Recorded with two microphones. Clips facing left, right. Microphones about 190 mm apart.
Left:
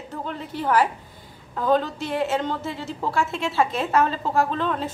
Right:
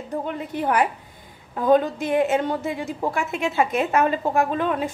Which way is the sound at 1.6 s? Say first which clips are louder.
Right 3 dB; 15° right (ahead or behind).